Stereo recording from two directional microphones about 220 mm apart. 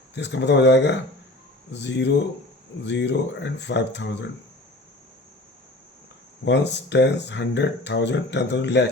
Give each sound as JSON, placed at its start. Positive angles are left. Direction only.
{"t": 0.1, "sound": "speech", "side_deg": 50}
{"t": 6.4, "sound": "speech", "side_deg": 50}